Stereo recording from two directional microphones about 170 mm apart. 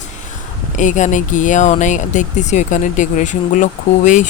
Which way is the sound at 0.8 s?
45° left (ahead or behind).